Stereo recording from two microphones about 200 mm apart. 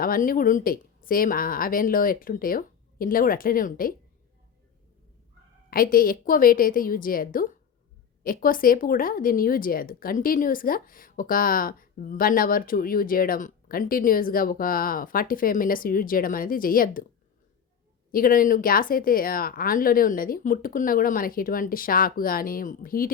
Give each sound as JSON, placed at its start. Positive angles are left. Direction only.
{"t": 0.0, "sound": "speech", "side_deg": 45}
{"t": 5.7, "sound": "speech", "side_deg": 45}
{"t": 18.1, "sound": "speech", "side_deg": 45}